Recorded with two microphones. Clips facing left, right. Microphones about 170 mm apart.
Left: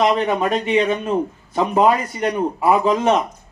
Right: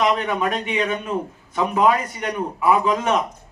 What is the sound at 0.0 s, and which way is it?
A man's voice, 35° left (ahead or behind).